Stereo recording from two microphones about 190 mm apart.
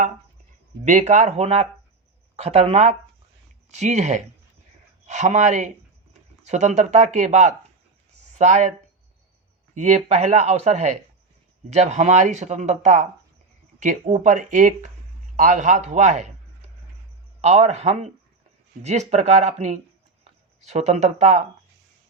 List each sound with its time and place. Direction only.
0.9 s speech: 40° right (ahead or behind)
9.7 s a man's voice: 35° right (ahead or behind)